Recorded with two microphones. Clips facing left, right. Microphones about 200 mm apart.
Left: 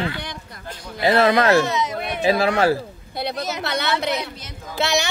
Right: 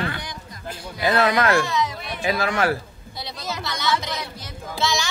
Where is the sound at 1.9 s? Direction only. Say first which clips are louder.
Left 6 dB; 60° left (ahead or behind).